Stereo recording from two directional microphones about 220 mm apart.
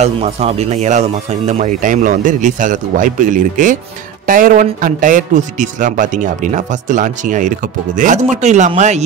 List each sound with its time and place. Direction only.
0.0 s a man's voice: 30° right (ahead or behind)